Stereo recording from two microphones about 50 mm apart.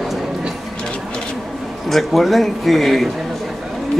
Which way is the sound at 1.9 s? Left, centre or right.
Centre.